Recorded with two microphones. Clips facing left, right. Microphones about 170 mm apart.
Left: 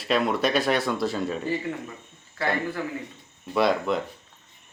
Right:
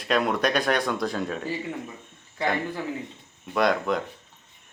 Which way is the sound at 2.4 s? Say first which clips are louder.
Right 1 dB; 15° right (ahead or behind).